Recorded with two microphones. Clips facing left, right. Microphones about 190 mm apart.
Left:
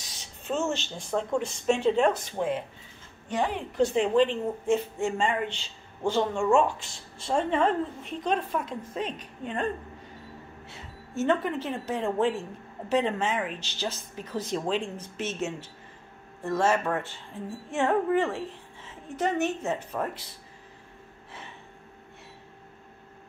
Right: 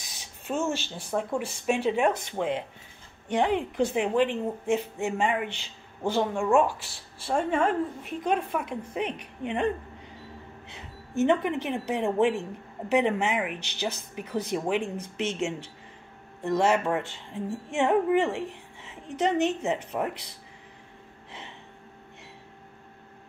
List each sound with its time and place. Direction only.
0.2 s a woman's voice: 10° right (ahead or behind)
10.7 s music: 15° right (ahead or behind)
11.9 s a woman's voice: 20° right (ahead or behind)